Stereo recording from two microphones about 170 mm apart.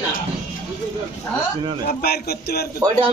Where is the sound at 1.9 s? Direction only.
65° left (ahead or behind).